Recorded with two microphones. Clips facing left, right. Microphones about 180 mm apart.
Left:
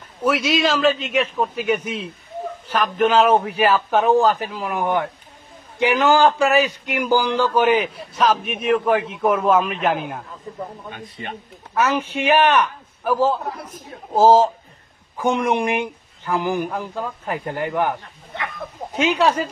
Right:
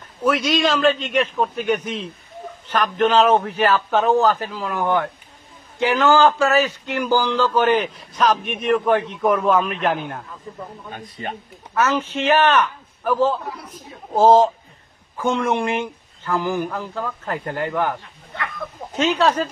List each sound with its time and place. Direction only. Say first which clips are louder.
0.2 s a man's voice: even; 5° left (ahead or behind)
10.9 s speech: right 2 dB; 40° right (ahead or behind)
11.7 s speech: even; 10° left (ahead or behind)
13.5 s speech: left 2 dB; 50° left (ahead or behind)
14.1 s a man's voice: even; 5° left (ahead or behind)
15.2 s speech: left 1 dB; 15° left (ahead or behind)
18.9 s speech: even; 10° left (ahead or behind)